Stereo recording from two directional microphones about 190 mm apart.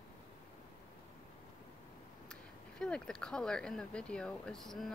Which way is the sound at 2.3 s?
5° left (ahead or behind).